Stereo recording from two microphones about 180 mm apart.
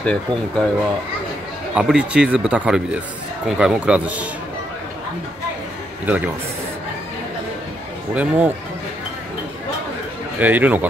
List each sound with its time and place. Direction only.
0.0 s speech: 5° left (ahead or behind)
1.8 s speech: 5° right (ahead or behind)
8.1 s speech: 10° right (ahead or behind)
10.4 s speech: 10° right (ahead or behind)